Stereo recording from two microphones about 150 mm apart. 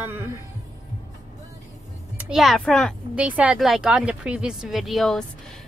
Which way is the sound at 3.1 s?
10° right (ahead or behind).